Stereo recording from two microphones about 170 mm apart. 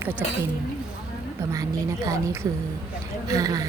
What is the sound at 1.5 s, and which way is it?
Speech, 20° right (ahead or behind).